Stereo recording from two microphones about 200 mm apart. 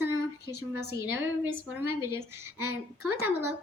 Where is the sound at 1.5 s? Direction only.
10° right (ahead or behind).